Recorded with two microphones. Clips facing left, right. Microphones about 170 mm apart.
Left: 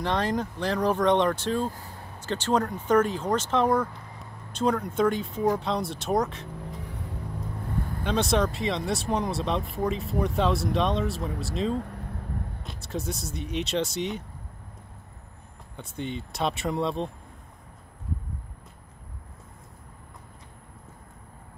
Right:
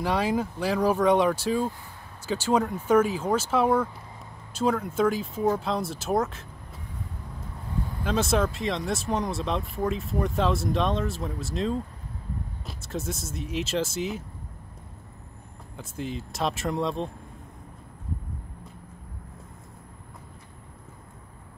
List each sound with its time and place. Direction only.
0.0 s speech: 10° right (ahead or behind)
6.8 s vehicle: 70° left (ahead or behind)
8.0 s speech: centre (ahead or behind)
15.7 s speech: centre (ahead or behind)